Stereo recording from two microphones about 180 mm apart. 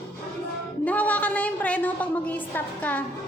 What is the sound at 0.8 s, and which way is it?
A woman's voice, 10° left (ahead or behind).